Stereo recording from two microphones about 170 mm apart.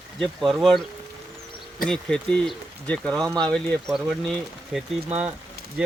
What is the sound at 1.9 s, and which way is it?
Speech, 5° left (ahead or behind).